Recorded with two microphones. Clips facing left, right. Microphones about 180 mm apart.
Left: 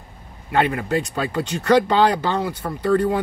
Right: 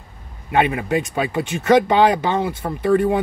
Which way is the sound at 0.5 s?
20° right (ahead or behind).